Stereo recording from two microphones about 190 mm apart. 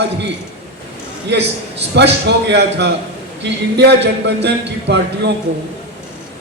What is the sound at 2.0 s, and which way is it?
A man's voice, 65° right (ahead or behind).